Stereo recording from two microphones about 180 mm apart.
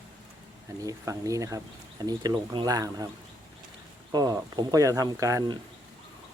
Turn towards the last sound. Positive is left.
turn(degrees=-20)  # may be behind; listen again after turning